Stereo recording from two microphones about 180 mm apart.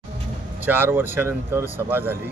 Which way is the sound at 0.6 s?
10° right (ahead or behind).